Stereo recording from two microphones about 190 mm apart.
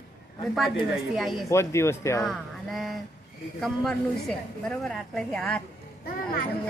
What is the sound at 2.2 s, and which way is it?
A woman's voice, centre (ahead or behind).